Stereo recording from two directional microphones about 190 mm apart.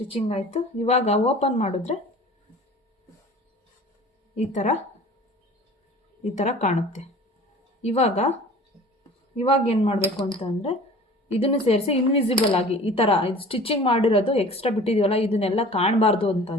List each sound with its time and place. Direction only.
0.1 s speech: 35° left (ahead or behind)
4.4 s speech: 40° left (ahead or behind)
6.3 s speech: 35° left (ahead or behind)